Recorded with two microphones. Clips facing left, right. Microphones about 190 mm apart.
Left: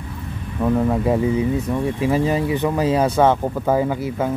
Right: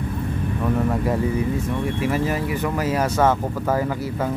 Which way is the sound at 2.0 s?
25° left (ahead or behind).